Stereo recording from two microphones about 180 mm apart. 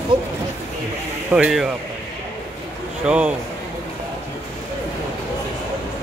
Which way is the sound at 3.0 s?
5° right (ahead or behind).